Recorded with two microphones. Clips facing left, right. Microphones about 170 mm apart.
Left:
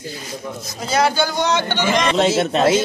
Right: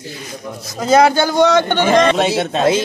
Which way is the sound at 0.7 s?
50° right (ahead or behind).